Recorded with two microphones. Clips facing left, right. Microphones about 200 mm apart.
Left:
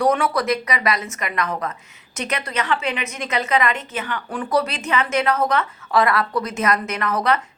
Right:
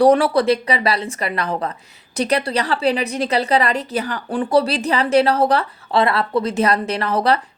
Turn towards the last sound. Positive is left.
turn(degrees=-30)  # may be behind; listen again after turning